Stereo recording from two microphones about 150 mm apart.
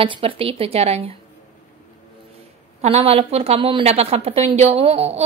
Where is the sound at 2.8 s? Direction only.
40° right (ahead or behind).